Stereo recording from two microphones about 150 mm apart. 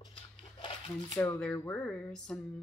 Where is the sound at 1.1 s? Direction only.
20° left (ahead or behind).